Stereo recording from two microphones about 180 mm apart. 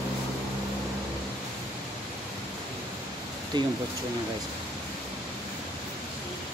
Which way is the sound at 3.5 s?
25° right (ahead or behind).